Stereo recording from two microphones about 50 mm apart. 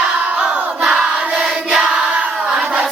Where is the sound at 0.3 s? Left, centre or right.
Right.